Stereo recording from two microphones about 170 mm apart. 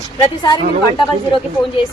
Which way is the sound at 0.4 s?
30° left (ahead or behind).